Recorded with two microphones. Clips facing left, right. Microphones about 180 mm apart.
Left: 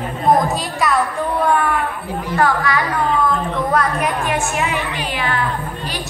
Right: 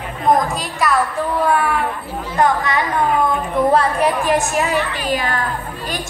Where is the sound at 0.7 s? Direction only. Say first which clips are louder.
Right 1 dB; centre (ahead or behind).